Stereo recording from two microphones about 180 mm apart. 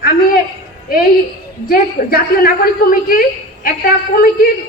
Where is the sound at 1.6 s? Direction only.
55° left (ahead or behind).